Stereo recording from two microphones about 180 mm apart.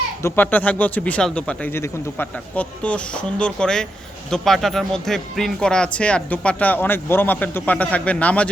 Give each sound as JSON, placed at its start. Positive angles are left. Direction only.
{"t": 0.2, "sound": "speech", "side_deg": 10}